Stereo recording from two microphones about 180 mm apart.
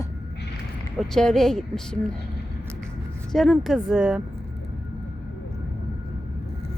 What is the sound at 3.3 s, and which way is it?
Speech, centre (ahead or behind).